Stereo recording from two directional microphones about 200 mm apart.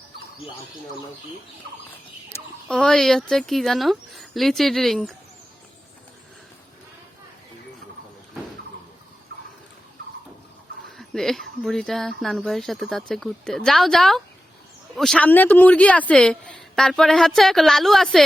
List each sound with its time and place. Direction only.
2.3 s speech: 5° left (ahead or behind)
10.9 s speech: centre (ahead or behind)